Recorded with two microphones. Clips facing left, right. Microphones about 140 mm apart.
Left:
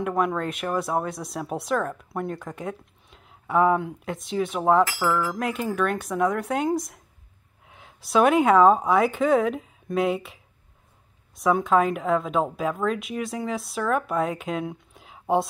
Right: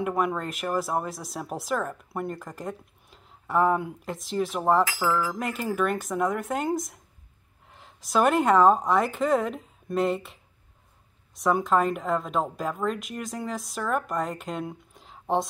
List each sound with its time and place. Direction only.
0.0 s speech: 5° right (ahead or behind)